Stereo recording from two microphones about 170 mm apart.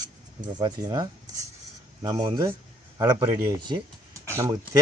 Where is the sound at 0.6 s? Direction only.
25° right (ahead or behind).